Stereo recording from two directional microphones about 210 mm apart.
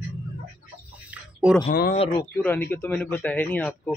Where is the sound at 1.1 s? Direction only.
5° right (ahead or behind).